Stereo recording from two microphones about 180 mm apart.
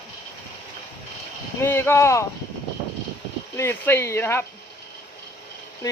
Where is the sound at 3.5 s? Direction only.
15° left (ahead or behind).